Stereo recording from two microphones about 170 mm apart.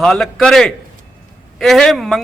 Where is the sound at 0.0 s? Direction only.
Centre (ahead or behind).